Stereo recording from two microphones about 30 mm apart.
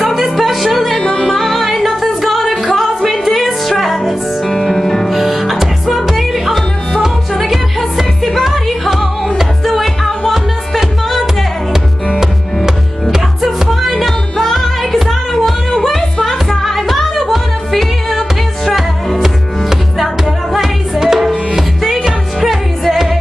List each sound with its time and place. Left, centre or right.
0.0 s music: centre
0.9 s music: left
1.2 s music: centre
5.1 s music: centre
8.2 s music: centre
10.2 s music: centre
13.7 s music: centre
16.6 s music: centre
20.9 s tabla: centre
21.5 s music: centre